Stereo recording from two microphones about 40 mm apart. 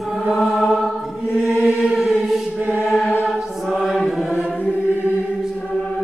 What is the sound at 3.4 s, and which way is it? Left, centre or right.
Mantra, centre.